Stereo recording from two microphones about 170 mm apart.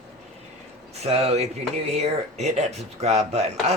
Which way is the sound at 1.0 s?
40° right (ahead or behind).